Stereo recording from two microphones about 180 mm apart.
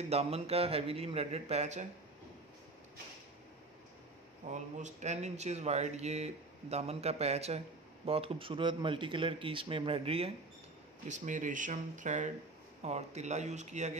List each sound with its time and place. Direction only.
0.1 s speech: 35° right (ahead or behind)
4.5 s speech: 40° right (ahead or behind)
11.1 s speech: 45° right (ahead or behind)